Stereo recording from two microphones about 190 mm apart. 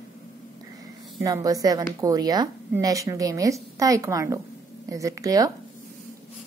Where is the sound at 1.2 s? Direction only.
20° right (ahead or behind).